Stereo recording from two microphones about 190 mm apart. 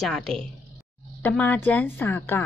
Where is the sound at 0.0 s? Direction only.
Centre (ahead or behind).